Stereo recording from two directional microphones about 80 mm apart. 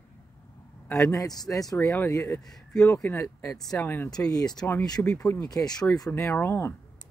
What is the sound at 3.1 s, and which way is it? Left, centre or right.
Speech, left.